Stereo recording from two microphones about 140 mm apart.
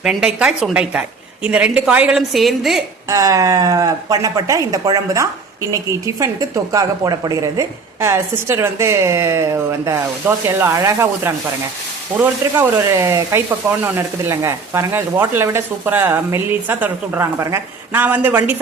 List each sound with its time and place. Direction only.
0.0 s a woman's voice: 5° right (ahead or behind)
3.1 s a woman's voice: 25° right (ahead or behind)